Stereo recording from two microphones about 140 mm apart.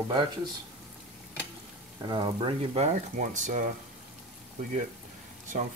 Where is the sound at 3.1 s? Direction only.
60° right (ahead or behind).